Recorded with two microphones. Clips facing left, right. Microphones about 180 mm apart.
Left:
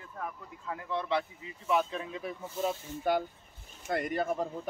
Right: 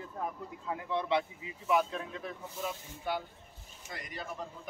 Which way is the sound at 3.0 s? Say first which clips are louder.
Left 7 dB; 45° left (ahead or behind).